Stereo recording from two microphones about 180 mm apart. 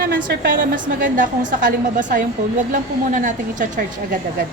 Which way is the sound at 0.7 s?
45° right (ahead or behind).